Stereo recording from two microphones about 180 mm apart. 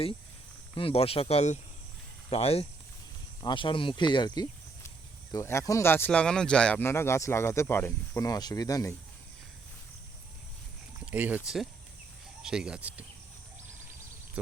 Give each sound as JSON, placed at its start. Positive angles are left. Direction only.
{"t": 0.8, "sound": "speech", "side_deg": 30}
{"t": 11.0, "sound": "speech", "side_deg": -10}